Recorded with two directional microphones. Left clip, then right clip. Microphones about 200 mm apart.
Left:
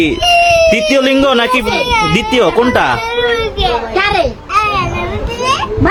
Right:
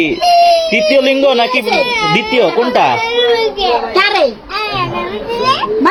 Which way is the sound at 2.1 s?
30° left (ahead or behind).